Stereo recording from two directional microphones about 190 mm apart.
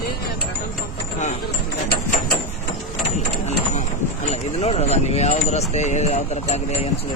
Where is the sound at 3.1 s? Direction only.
35° left (ahead or behind).